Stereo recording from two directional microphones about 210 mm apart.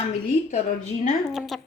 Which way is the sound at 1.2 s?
Centre (ahead or behind).